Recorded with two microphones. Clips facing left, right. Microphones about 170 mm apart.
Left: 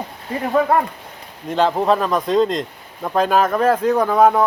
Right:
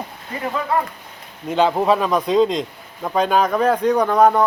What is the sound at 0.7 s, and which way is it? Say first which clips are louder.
Speech: even; 60° left (ahead or behind).